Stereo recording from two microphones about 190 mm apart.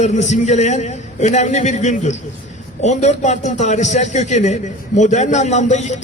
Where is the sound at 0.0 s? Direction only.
40° left (ahead or behind).